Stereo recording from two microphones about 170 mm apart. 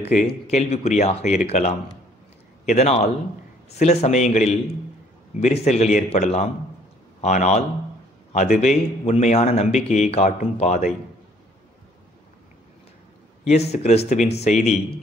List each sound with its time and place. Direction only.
0.0 s a man's voice: 45° left (ahead or behind)
13.5 s speech: 40° left (ahead or behind)